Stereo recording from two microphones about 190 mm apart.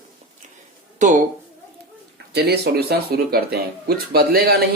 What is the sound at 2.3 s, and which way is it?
A woman's voice, 55° right (ahead or behind).